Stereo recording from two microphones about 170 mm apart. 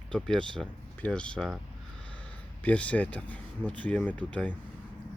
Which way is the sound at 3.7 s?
10° left (ahead or behind).